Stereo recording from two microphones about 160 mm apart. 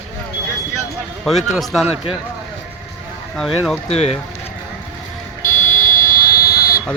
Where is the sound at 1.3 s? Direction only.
Centre (ahead or behind).